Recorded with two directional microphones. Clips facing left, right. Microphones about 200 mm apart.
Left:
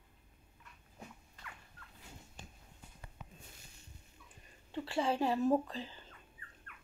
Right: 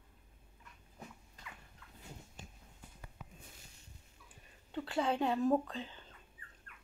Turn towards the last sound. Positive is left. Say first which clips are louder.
# left 1 dB
turn(degrees=5)  # may be behind; listen again after turning